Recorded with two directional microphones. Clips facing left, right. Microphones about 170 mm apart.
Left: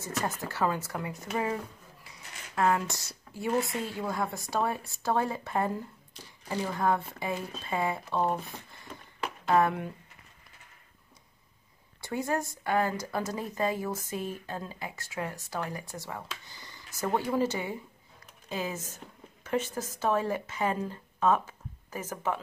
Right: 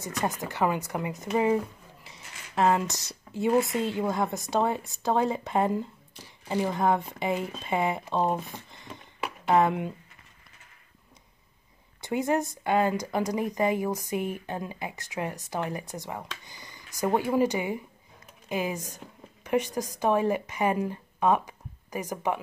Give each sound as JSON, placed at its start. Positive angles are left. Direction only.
{"t": 0.0, "sound": "speech", "side_deg": -15}
{"t": 12.0, "sound": "speech", "side_deg": -20}